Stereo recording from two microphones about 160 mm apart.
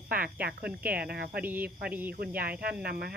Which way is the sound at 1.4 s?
10° right (ahead or behind).